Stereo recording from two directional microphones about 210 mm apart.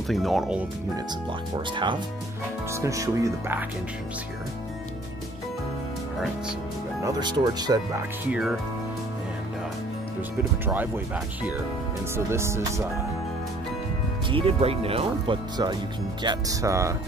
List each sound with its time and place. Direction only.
0.1 s speech: centre (ahead or behind)
2.7 s speech: 15° right (ahead or behind)
7.1 s speech: 20° right (ahead or behind)
8.3 s speech: 5° right (ahead or behind)
10.6 s speech: 10° right (ahead or behind)
12.3 s speech: 10° right (ahead or behind)
14.3 s speech: 25° right (ahead or behind)